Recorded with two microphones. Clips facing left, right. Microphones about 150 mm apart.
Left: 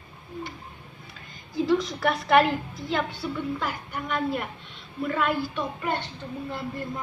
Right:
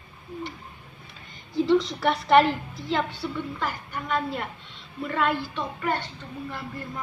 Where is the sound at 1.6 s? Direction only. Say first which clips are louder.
Right 2 dB; 5° left (ahead or behind).